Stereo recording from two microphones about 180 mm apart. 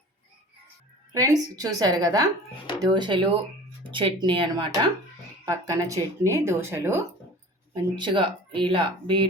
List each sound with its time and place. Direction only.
1.1 s speech: 20° right (ahead or behind)
7.7 s speech: 25° right (ahead or behind)